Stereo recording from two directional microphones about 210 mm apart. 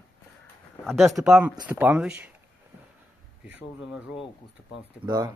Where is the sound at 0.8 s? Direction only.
Centre (ahead or behind).